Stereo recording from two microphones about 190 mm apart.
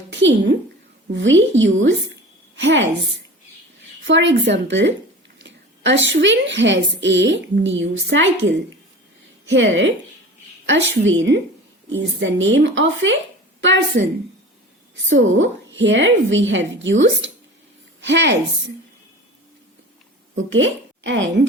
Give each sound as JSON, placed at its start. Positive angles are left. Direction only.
{"t": 0.1, "sound": "a woman's voice", "side_deg": -70}
{"t": 4.0, "sound": "a woman's voice", "side_deg": -70}
{"t": 9.5, "sound": "a woman's voice", "side_deg": -70}
{"t": 13.6, "sound": "a woman's voice", "side_deg": -75}
{"t": 20.3, "sound": "a woman's voice", "side_deg": -85}